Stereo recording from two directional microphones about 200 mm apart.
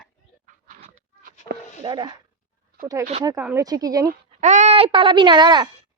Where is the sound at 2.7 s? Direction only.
55° right (ahead or behind).